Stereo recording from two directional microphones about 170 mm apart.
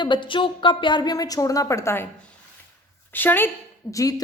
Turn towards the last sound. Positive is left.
turn(degrees=20)  # may be behind; listen again after turning